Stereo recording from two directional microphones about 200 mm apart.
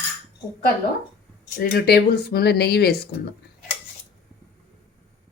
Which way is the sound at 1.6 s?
50° left (ahead or behind).